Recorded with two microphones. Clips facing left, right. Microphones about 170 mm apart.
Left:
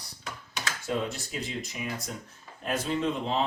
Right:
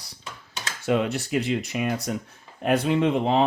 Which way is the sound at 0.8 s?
75° right (ahead or behind).